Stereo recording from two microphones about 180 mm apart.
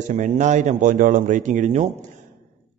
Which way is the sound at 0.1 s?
45° right (ahead or behind).